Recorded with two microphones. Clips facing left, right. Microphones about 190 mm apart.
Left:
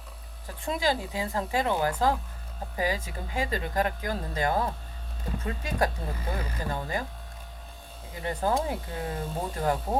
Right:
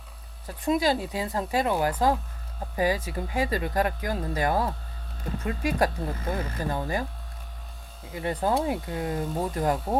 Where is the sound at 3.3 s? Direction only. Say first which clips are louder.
Right 3 dB; 20° left (ahead or behind).